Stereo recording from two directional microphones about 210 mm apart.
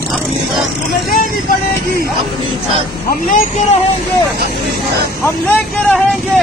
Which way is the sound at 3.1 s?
40° left (ahead or behind).